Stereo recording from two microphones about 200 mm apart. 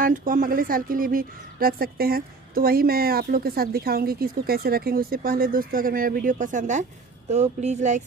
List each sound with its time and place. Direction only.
0.0 s speech: 45° right (ahead or behind)